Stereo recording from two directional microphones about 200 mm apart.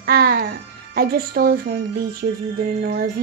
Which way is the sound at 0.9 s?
50° right (ahead or behind).